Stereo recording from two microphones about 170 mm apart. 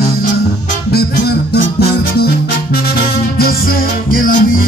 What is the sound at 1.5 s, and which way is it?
Music, 65° left (ahead or behind).